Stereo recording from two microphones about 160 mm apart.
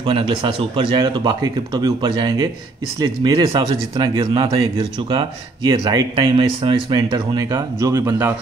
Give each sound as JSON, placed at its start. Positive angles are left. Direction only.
{"t": 0.0, "sound": "speech", "side_deg": -30}
{"t": 7.1, "sound": "speech", "side_deg": -20}